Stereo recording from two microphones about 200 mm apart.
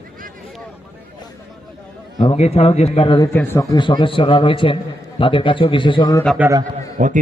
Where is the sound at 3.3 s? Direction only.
10° left (ahead or behind).